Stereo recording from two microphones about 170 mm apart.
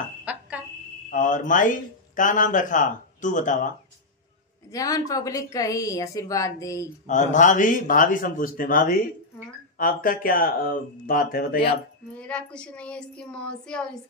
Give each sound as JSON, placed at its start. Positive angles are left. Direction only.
{"t": 0.2, "sound": "a sound", "side_deg": -10}
{"t": 1.1, "sound": "speech", "side_deg": 50}
{"t": 4.6, "sound": "a woman's voice", "side_deg": 20}
{"t": 7.1, "sound": "speech", "side_deg": 45}
{"t": 12.2, "sound": "speech", "side_deg": 5}